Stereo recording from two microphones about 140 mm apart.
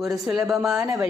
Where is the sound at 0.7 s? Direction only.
20° right (ahead or behind).